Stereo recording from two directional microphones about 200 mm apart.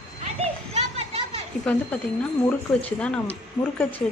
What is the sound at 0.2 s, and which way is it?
Children playing, 30° right (ahead or behind).